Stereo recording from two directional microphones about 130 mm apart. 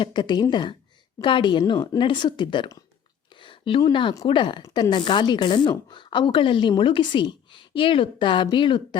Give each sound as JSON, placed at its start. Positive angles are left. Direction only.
{"t": 0.0, "sound": "a woman's voice", "side_deg": 35}
{"t": 3.4, "sound": "a sound", "side_deg": 40}
{"t": 4.3, "sound": "a woman's voice", "side_deg": 40}